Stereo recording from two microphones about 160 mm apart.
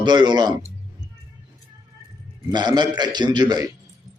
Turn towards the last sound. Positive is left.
turn(degrees=-25)  # may be behind; listen again after turning